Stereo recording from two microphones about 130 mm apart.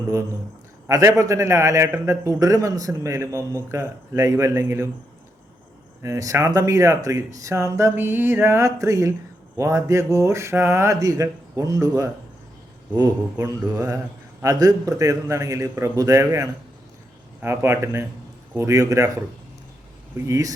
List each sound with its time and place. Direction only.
0.9 s a man's voice: 25° right (ahead or behind)
6.0 s a man's voice: 25° right (ahead or behind)
13.3 s a man's voice: 25° right (ahead or behind)
20.2 s a man's voice: 25° right (ahead or behind)